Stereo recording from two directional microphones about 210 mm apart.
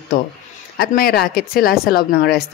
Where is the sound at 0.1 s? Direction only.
45° left (ahead or behind).